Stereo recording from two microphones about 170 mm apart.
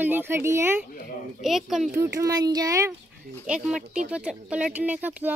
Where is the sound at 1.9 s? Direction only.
20° right (ahead or behind).